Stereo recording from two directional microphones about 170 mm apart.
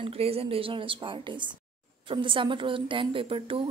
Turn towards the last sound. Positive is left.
turn(degrees=-30)  # may be behind; listen again after turning